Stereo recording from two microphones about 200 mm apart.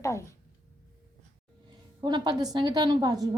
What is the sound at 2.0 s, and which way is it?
A woman's voice, 20° right (ahead or behind).